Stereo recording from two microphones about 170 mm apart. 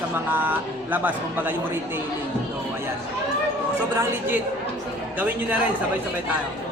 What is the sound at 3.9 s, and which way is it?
Speech, 15° right (ahead or behind).